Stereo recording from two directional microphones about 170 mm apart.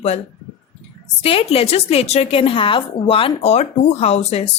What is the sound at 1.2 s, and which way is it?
A woman's voice, 35° left (ahead or behind).